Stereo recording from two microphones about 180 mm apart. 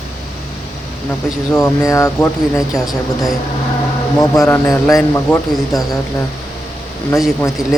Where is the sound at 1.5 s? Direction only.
15° left (ahead or behind).